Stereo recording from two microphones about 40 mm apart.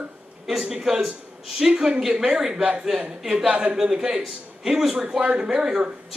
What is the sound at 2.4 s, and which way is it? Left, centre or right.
Speech, centre.